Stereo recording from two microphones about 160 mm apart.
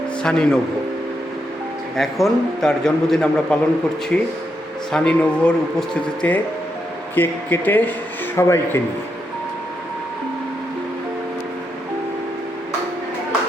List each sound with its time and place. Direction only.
0.2 s a man's voice: 5° left (ahead or behind)
2.0 s a man's voice: centre (ahead or behind); by 8.8 s 15° left (ahead or behind)